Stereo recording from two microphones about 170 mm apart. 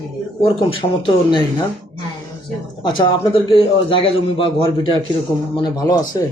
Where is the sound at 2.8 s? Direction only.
30° left (ahead or behind).